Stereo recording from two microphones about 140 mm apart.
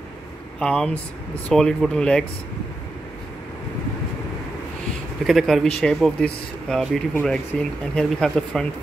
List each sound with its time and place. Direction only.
0.6 s speech: 5° left (ahead or behind)
5.2 s speech: centre (ahead or behind)